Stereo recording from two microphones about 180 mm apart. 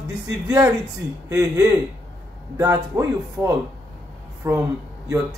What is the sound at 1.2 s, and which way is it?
Speech, 15° right (ahead or behind).